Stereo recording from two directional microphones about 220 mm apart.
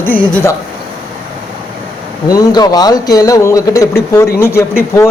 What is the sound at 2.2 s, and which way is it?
A man's voice, 15° left (ahead or behind).